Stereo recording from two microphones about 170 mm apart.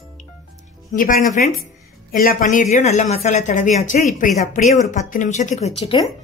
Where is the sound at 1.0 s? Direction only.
50° left (ahead or behind).